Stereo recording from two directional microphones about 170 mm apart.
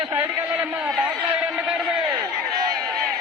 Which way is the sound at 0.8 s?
5° right (ahead or behind).